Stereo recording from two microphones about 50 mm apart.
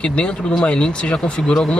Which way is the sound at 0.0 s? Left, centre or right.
Left.